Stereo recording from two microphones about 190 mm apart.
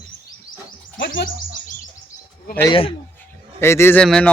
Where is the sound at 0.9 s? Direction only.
75° left (ahead or behind).